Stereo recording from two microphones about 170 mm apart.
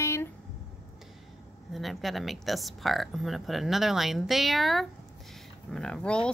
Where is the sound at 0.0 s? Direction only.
15° left (ahead or behind).